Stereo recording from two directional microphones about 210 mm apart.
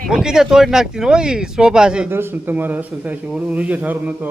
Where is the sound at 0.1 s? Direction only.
5° right (ahead or behind).